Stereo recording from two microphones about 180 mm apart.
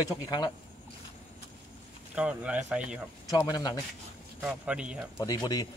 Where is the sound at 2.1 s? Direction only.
5° right (ahead or behind).